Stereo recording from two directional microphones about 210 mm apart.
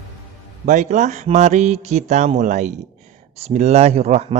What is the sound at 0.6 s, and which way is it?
A man's voice, 35° right (ahead or behind).